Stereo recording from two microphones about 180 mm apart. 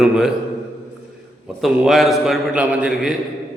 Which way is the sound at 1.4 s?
Centre (ahead or behind).